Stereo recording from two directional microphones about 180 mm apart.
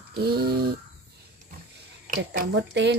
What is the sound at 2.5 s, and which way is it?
Speech, 75° right (ahead or behind).